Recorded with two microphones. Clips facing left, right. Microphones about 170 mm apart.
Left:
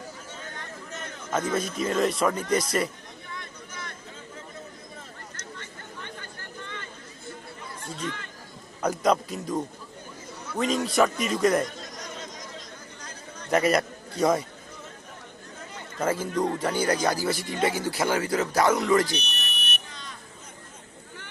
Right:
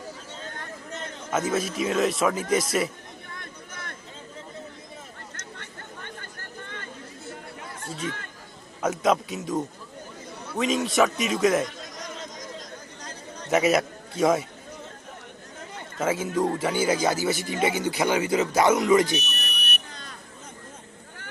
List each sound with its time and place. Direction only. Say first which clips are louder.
1.3 s speech: right 1 dB; 5° right (ahead or behind)
3.2 s a sound: left 4 dB; 50° right (ahead or behind)
8.0 s chatter: right 1 dB; 50° right (ahead or behind)
8.8 s speech: even; centre (ahead or behind)
12.5 s a sound: right 2 dB; 40° right (ahead or behind)
13.5 s speech: right 1 dB; 5° right (ahead or behind)
16.0 s speech: right 1 dB; 5° right (ahead or behind)
19.1 s buzzer: right 3 dB; centre (ahead or behind)